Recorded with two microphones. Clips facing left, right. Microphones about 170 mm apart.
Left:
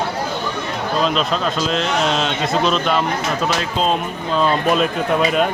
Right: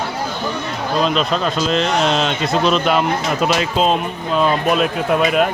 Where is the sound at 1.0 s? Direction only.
Centre (ahead or behind).